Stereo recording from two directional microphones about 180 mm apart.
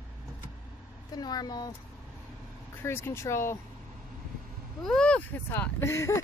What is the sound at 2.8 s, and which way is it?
Speech, 15° left (ahead or behind).